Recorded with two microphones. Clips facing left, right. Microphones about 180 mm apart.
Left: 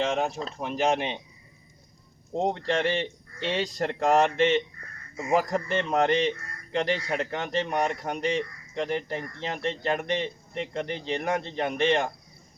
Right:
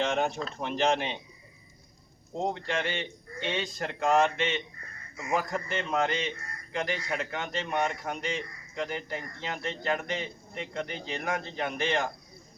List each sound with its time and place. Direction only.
0.0 s speech: centre (ahead or behind)
0.9 s a man's voice: 15° left (ahead or behind)
2.3 s speech: 30° left (ahead or behind)
5.1 s a man's voice: 30° left (ahead or behind)